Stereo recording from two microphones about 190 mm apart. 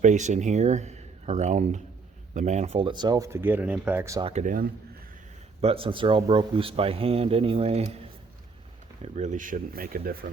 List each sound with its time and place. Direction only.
0.0 s speech: 40° right (ahead or behind); by 4.2 s 15° right (ahead or behind)
4.2 s speech: 35° right (ahead or behind)
5.6 s speech: 30° right (ahead or behind)
9.0 s speech: 35° right (ahead or behind)